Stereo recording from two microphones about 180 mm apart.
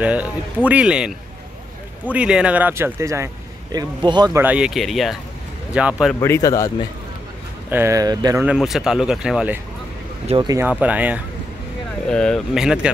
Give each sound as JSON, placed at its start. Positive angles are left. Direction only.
{"t": 0.0, "sound": "speech", "side_deg": -10}
{"t": 4.4, "sound": "speech", "side_deg": -5}
{"t": 6.1, "sound": "speech", "side_deg": 15}
{"t": 7.7, "sound": "speech", "side_deg": -15}
{"t": 8.4, "sound": "speech", "side_deg": -5}
{"t": 10.2, "sound": "speech", "side_deg": -25}
{"t": 10.6, "sound": "speech", "side_deg": -10}
{"t": 12.1, "sound": "speech", "side_deg": 5}